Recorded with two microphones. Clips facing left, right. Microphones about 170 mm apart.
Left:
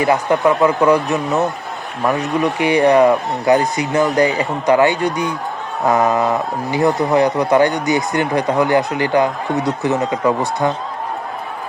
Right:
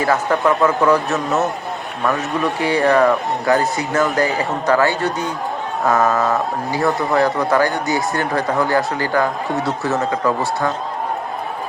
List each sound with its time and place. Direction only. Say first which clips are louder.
0.0 s speech: left 2 dB; 15° left (ahead or behind)